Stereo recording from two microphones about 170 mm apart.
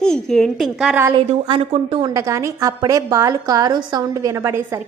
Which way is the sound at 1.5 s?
35° right (ahead or behind).